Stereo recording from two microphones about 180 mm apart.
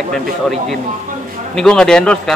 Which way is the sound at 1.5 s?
5° left (ahead or behind).